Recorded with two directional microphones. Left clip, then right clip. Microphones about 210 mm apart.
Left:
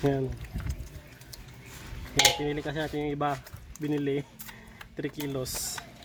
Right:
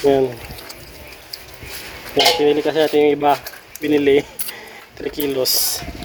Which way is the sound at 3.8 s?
45° right (ahead or behind).